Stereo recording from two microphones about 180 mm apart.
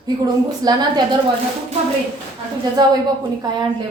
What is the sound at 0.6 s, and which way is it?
Speech, 20° right (ahead or behind).